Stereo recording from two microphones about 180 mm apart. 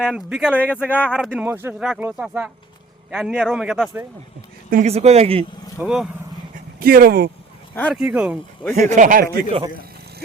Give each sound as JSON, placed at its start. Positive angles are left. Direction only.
{"t": 0.0, "sound": "speech", "side_deg": 0}
{"t": 4.7, "sound": "speech", "side_deg": -40}
{"t": 5.8, "sound": "speech", "side_deg": -5}
{"t": 6.7, "sound": "speech", "side_deg": -55}
{"t": 7.9, "sound": "speech", "side_deg": -5}
{"t": 8.7, "sound": "speech", "side_deg": -40}